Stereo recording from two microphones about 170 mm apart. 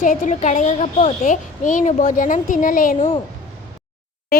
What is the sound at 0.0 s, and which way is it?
A child's voice, 45° left (ahead or behind).